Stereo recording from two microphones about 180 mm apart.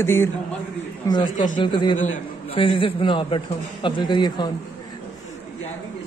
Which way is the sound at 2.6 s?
30° left (ahead or behind).